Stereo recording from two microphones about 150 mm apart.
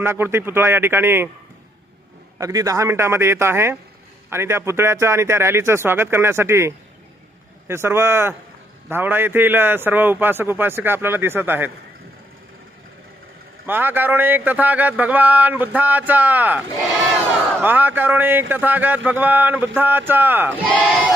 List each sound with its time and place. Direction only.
0.0 s speech: 15° right (ahead or behind)
2.4 s speech: 25° right (ahead or behind)
13.7 s speech: 15° right (ahead or behind)